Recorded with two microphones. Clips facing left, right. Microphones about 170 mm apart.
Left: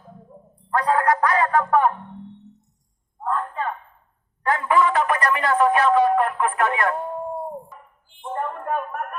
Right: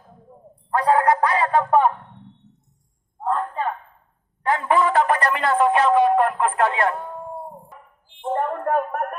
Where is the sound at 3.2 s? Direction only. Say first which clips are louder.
Right 2 dB; 30° right (ahead or behind).